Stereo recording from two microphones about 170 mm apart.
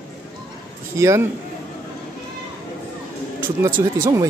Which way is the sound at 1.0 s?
15° right (ahead or behind).